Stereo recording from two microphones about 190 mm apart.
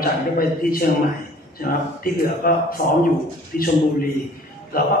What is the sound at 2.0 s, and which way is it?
Speech, 50° left (ahead or behind).